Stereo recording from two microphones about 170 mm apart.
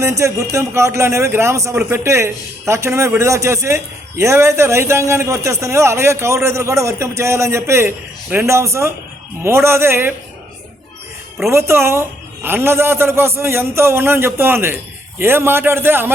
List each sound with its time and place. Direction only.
0.0 s a man's voice: 15° right (ahead or behind)
11.5 s a man's voice: 15° right (ahead or behind)